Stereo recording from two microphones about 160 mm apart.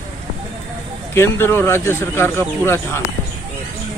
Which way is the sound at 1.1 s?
15° left (ahead or behind).